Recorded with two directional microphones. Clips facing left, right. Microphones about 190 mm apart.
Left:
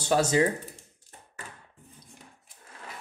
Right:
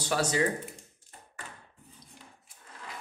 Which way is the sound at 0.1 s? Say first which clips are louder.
Left 5 dB; 25° left (ahead or behind).